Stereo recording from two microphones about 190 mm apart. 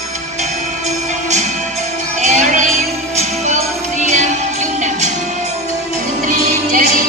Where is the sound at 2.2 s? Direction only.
40° right (ahead or behind).